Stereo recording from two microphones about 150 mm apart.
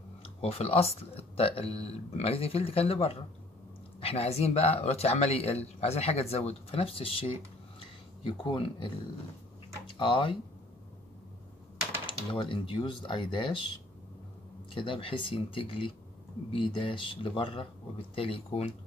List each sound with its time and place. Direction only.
0.4 s speech: 40° left (ahead or behind)
9.9 s speech: 35° left (ahead or behind)
12.2 s speech: 35° left (ahead or behind)
14.7 s speech: 35° left (ahead or behind)